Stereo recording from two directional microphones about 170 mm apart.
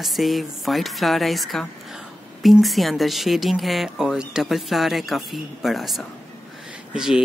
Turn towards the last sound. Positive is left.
turn(degrees=-5)  # may be behind; listen again after turning